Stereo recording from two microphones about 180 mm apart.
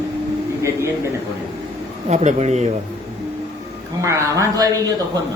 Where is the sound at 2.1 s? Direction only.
40° right (ahead or behind).